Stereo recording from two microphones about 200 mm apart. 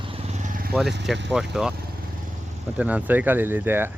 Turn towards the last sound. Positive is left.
turn(degrees=-10)  # may be behind; listen again after turning